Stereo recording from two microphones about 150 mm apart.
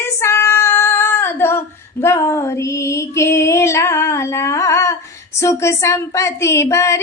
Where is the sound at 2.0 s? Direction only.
20° left (ahead or behind).